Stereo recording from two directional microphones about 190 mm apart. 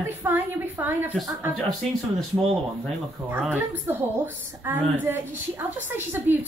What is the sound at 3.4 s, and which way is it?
A woman's voice, 10° right (ahead or behind).